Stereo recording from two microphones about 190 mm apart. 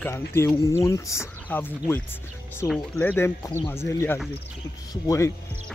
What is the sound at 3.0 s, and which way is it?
Speech, 10° left (ahead or behind).